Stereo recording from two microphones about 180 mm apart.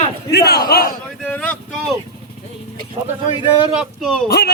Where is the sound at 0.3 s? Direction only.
60° left (ahead or behind).